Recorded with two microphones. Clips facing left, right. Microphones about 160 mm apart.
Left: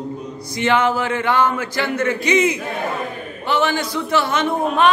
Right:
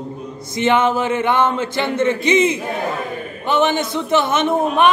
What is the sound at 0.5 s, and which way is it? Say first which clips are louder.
A man's voice: right 2 dB; 20° right (ahead or behind).